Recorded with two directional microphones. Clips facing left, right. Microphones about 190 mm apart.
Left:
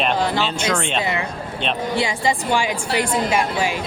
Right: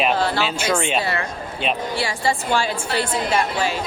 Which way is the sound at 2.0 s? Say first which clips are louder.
Left 2 dB; 20° left (ahead or behind).